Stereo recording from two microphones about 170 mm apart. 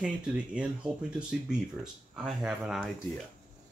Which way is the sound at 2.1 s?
5° right (ahead or behind).